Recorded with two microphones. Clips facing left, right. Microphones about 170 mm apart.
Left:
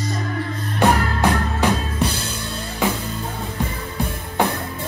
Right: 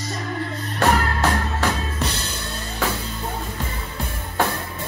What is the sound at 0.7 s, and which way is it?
Music, 15° left (ahead or behind).